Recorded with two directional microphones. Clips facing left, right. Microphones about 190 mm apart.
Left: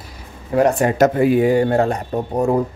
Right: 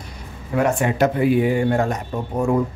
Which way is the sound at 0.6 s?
35° left (ahead or behind).